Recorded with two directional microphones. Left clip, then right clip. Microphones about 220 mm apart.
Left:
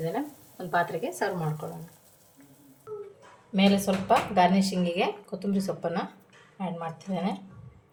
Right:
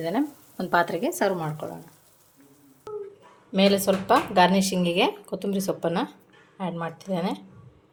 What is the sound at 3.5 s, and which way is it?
Speech, 45° right (ahead or behind).